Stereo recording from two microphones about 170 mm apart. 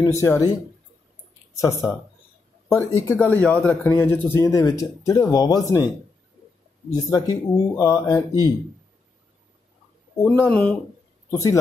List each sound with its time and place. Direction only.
0.0 s speech: 15° left (ahead or behind)
1.6 s speech: 15° left (ahead or behind)
6.9 s speech: 20° left (ahead or behind)
10.2 s speech: 10° left (ahead or behind)